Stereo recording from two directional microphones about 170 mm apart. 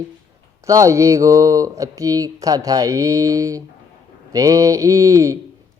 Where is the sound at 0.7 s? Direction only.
20° right (ahead or behind).